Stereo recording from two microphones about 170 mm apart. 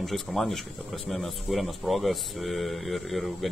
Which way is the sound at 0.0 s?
Centre (ahead or behind).